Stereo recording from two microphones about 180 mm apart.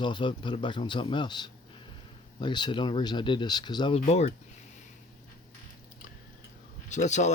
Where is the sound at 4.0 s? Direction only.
35° left (ahead or behind).